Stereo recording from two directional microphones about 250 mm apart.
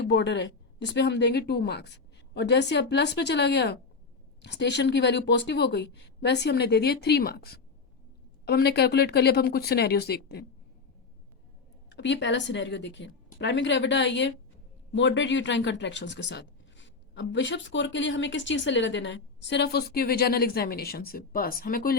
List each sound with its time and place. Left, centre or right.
0.1 s speech: left
11.9 s speech: left